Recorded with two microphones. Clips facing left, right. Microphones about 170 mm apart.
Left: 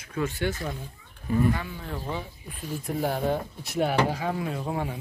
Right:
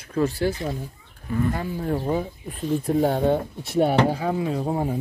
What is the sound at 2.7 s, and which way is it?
Speech, 25° right (ahead or behind).